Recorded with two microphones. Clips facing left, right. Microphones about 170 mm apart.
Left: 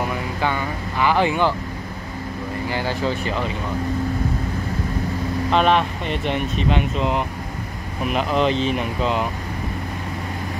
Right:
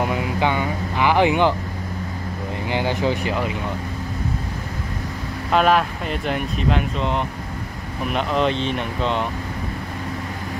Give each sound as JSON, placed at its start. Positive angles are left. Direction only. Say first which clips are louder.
{"t": 0.0, "sound": "speech", "louder": "right 2 dB", "side_deg": -15}
{"t": 2.7, "sound": "speech", "louder": "right 3 dB", "side_deg": -20}
{"t": 5.5, "sound": "speech", "louder": "right 1 dB", "side_deg": -5}